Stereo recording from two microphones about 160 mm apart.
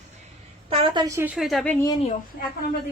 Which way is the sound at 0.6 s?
35° right (ahead or behind).